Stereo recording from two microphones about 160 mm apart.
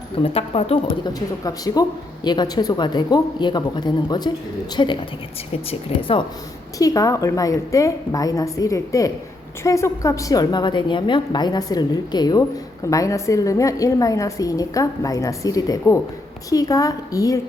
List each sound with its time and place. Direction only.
0.2 s a woman's voice: 35° left (ahead or behind)
6.7 s a woman's voice: 20° left (ahead or behind)